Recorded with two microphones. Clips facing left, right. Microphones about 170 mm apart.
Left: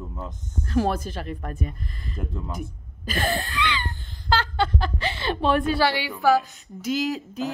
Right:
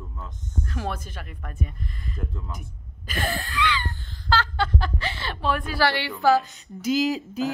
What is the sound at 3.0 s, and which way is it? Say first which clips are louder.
Wheeze: left 3 dB; 30° left (ahead or behind).